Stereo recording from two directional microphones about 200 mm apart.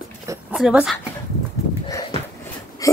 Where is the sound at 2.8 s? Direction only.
15° left (ahead or behind).